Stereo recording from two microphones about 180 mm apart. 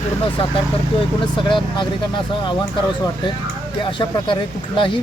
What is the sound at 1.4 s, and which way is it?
Speech, 25° left (ahead or behind).